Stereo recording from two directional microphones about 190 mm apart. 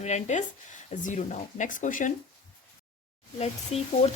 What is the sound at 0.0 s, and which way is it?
Speech, 35° left (ahead or behind).